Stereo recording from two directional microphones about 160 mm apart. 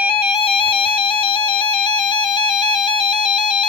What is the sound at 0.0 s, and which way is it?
Music, 35° left (ahead or behind).